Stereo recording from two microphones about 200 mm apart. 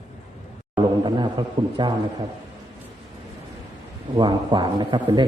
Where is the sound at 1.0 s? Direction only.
20° right (ahead or behind).